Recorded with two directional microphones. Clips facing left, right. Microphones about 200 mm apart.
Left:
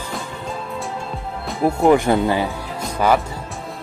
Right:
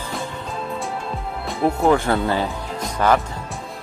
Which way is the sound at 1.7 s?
15° left (ahead or behind).